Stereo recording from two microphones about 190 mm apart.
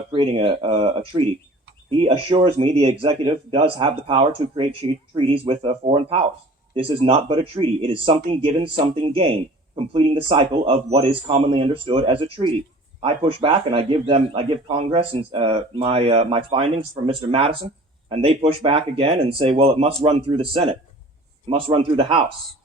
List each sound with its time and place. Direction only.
0.1 s a man's voice: 30° right (ahead or behind)